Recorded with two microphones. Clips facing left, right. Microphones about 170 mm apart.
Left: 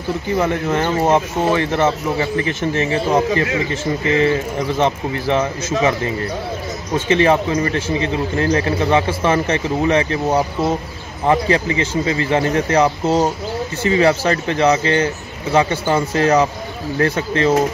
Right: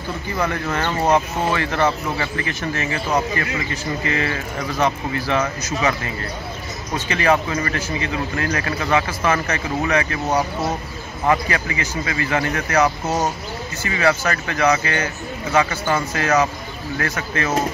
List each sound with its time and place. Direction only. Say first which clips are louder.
0.4 s a man's voice: left 3 dB; 20° left (ahead or behind)
7.1 s a man's voice: left 4 dB; 25° left (ahead or behind)